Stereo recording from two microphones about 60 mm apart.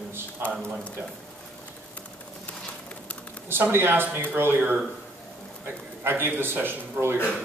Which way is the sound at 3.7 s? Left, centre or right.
Right.